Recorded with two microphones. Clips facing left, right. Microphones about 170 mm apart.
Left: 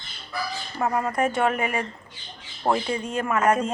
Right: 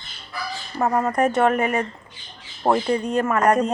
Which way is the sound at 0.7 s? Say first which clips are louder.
Right 4 dB; 35° right (ahead or behind).